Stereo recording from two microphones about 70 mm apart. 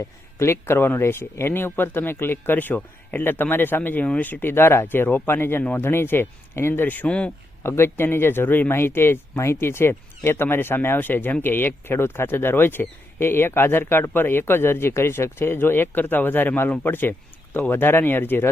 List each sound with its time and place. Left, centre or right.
0.3 s speech: left; by 7.3 s centre
7.6 s speech: left